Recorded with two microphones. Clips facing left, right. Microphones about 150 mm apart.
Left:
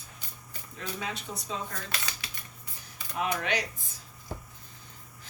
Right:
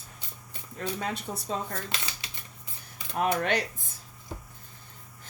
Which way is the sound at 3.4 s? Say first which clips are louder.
Right 3 dB; 50° right (ahead or behind).